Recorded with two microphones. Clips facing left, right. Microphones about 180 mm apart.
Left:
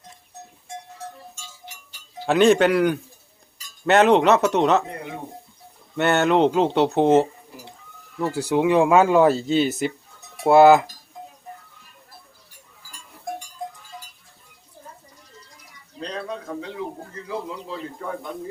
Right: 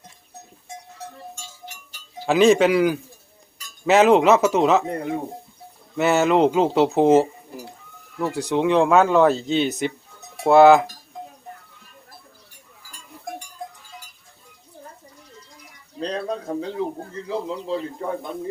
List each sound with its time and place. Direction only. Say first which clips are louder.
2.2 s speech: right 1 dB; centre (ahead or behind)
6.0 s speech: right 1 dB; centre (ahead or behind)
16.0 s a sound: right 4 dB; 35° right (ahead or behind)
17.2 s a man's voice: right 4 dB; 25° right (ahead or behind)